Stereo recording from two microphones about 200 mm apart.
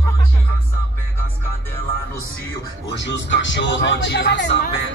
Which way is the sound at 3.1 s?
65° left (ahead or behind).